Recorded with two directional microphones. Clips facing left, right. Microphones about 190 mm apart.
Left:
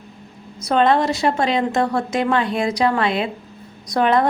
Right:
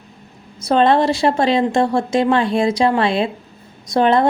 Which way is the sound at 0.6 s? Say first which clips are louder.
Right 3 dB; 30° right (ahead or behind).